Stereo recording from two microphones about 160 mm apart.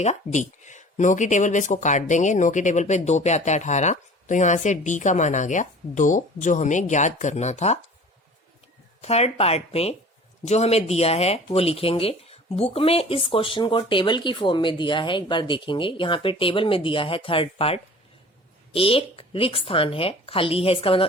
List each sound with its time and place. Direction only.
0.0 s speech: 45° left (ahead or behind)
9.0 s speech: 40° left (ahead or behind)